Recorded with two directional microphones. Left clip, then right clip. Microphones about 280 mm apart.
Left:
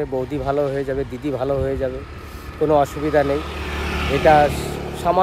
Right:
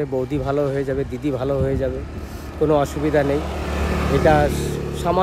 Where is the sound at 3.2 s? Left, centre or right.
Right.